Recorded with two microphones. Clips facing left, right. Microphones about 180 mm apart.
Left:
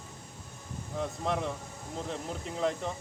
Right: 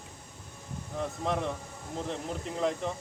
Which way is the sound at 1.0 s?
Centre (ahead or behind).